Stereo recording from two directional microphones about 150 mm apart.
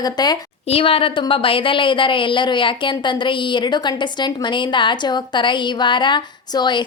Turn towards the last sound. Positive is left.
turn(degrees=30)  # may be behind; listen again after turning